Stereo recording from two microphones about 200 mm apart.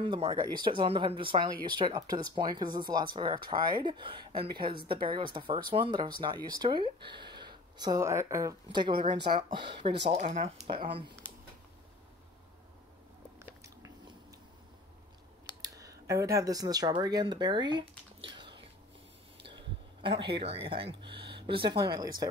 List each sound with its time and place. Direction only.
0.0 s speech: 25° right (ahead or behind)
10.1 s speech: 35° right (ahead or behind)
13.4 s biting: 15° right (ahead or behind)
15.6 s speech: 15° right (ahead or behind)
19.4 s a sound: 25° right (ahead or behind)
20.7 s speech: 25° right (ahead or behind)